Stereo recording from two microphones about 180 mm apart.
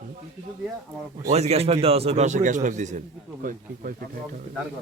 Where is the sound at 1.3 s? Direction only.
35° right (ahead or behind).